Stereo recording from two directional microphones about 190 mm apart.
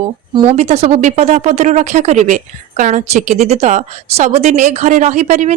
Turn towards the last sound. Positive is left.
turn(degrees=-40)  # may be behind; listen again after turning